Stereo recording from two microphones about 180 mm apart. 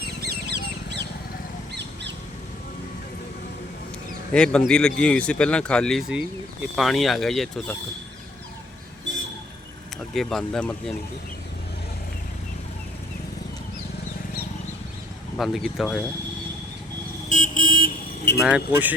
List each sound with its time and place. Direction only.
0.2 s a sound: 65° right (ahead or behind)
1.7 s bird: 70° right (ahead or behind)
4.3 s speech: 5° left (ahead or behind)
10.2 s speech: 5° left (ahead or behind)
15.4 s speech: centre (ahead or behind)
17.2 s vehicle: 45° left (ahead or behind)
18.4 s speech: 10° right (ahead or behind)